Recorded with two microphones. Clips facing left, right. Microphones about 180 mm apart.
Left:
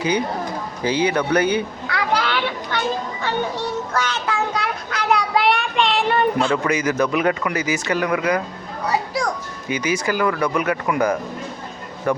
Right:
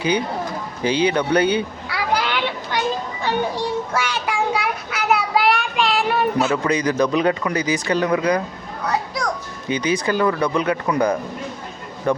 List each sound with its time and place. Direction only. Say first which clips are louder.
0.8 s speech: right 1 dB; 25° right (ahead or behind)
1.9 s children playing: left 1 dB; 15° right (ahead or behind)
3.2 s child singing: right 2 dB; 10° right (ahead or behind)
6.7 s a man's voice: right 1 dB; 35° right (ahead or behind)
9.6 s speech: right 1 dB; 30° right (ahead or behind)